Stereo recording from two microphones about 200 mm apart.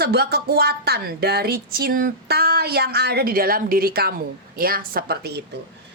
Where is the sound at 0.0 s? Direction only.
55° right (ahead or behind).